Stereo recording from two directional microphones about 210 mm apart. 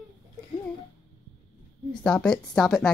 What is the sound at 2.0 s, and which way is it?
Speech, 5° left (ahead or behind).